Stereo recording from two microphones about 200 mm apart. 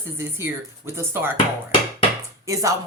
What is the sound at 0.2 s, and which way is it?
Speech, 10° right (ahead or behind).